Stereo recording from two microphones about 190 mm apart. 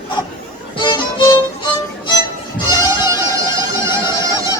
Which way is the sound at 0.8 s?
20° left (ahead or behind).